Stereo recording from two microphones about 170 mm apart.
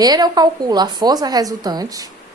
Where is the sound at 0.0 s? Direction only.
25° right (ahead or behind).